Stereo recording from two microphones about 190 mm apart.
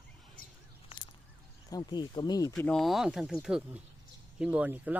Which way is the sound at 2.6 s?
5° left (ahead or behind).